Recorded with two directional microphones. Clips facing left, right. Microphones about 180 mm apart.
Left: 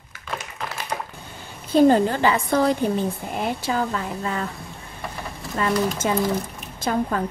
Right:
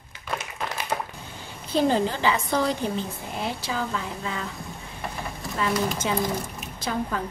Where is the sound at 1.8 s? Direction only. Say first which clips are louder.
Left 6 dB; 50° left (ahead or behind).